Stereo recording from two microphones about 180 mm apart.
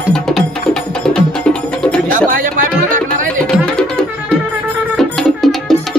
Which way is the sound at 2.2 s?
50° right (ahead or behind).